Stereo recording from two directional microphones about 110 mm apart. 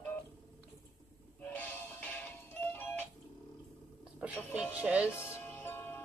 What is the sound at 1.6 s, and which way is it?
Music, 15° left (ahead or behind).